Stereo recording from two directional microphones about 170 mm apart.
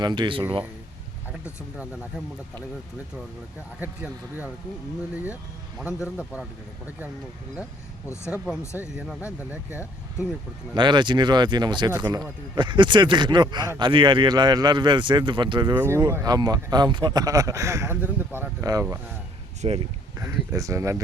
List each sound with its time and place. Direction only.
0.0 s speech: 25° right (ahead or behind)
3.8 s speech: 10° right (ahead or behind)
7.5 s speech: 15° left (ahead or behind)
9.0 s speech: 5° right (ahead or behind)
10.8 s speech: 25° right (ahead or behind)
19.6 s speech: 35° right (ahead or behind)
20.1 s speech: 20° right (ahead or behind)